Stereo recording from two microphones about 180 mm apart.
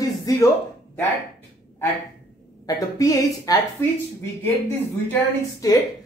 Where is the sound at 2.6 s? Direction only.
20° left (ahead or behind).